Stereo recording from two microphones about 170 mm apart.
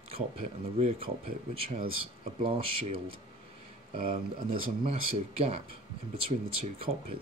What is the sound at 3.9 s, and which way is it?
Speech, 60° right (ahead or behind).